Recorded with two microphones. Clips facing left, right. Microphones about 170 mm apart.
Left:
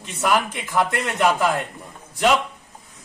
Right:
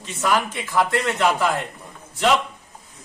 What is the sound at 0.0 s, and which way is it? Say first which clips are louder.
A man's voice: left 1 dB; 15° left (ahead or behind).